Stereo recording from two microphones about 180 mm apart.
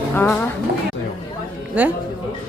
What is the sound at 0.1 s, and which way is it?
Speech, 10° left (ahead or behind).